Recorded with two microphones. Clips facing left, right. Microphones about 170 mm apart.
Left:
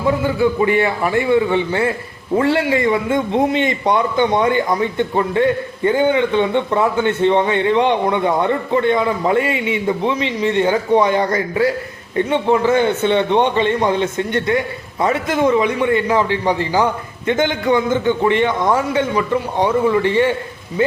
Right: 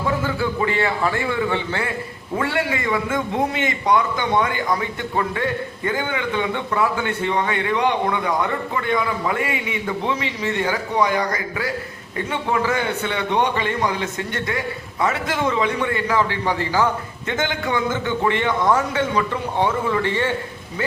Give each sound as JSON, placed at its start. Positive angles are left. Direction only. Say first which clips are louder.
{"t": 0.3, "sound": "a man's voice", "louder": "left 6 dB", "side_deg": 20}